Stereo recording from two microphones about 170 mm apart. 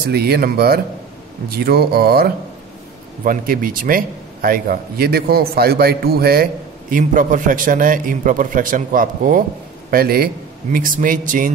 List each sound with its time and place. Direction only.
0.1 s a man's voice: 65° right (ahead or behind)